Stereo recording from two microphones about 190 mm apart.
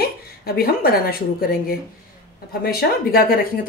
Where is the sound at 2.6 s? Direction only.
50° left (ahead or behind).